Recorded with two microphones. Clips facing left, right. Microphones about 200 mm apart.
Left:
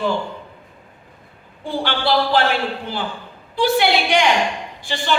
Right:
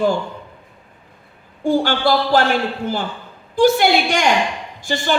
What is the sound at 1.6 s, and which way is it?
Speech, 45° right (ahead or behind).